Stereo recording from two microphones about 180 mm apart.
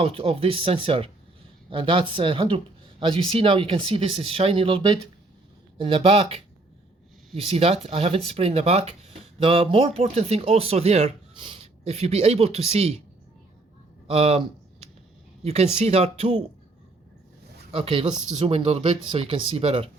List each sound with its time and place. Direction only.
0.0 s speech: 30° right (ahead or behind)
7.4 s speech: 35° right (ahead or behind)
14.1 s speech: 35° right (ahead or behind)
15.4 s speech: 35° right (ahead or behind)
17.7 s speech: 30° right (ahead or behind)